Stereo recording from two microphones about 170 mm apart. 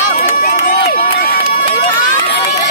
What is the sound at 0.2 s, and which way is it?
Run, 50° left (ahead or behind).